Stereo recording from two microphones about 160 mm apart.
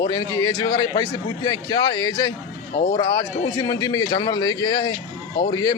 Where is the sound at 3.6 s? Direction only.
20° left (ahead or behind).